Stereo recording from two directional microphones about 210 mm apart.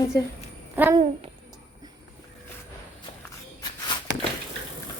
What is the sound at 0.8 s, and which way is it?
Speech, 10° right (ahead or behind).